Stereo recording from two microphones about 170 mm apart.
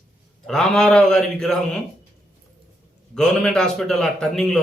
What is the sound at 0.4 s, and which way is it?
A man's voice, 5° left (ahead or behind).